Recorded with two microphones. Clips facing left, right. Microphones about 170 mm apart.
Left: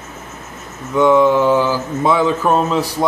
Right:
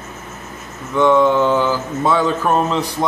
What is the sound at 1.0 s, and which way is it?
Speech, 10° left (ahead or behind).